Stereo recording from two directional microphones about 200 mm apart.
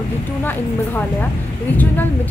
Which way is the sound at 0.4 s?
10° left (ahead or behind).